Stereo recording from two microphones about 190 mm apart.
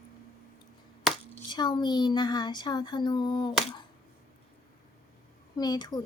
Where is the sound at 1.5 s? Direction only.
25° left (ahead or behind).